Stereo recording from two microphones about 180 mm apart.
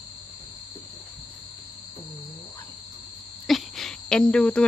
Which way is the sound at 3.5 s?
Centre (ahead or behind).